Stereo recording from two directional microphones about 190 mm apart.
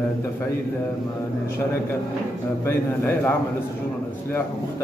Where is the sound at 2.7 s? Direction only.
10° left (ahead or behind).